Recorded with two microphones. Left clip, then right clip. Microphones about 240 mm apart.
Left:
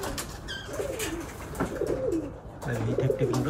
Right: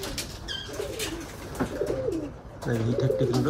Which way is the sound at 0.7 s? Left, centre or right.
Centre.